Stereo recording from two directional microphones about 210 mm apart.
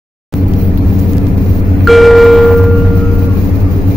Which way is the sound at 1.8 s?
Centre (ahead or behind).